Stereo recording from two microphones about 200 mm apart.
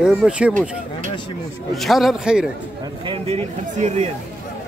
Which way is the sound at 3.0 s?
30° right (ahead or behind).